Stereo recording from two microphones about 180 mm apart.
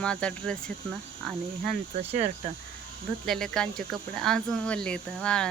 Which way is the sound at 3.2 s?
5° left (ahead or behind).